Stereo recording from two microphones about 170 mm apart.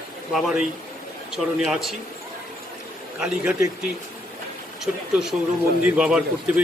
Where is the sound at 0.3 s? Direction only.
Centre (ahead or behind).